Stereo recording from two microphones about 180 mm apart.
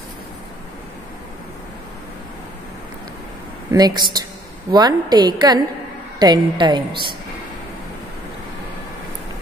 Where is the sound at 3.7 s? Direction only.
20° right (ahead or behind).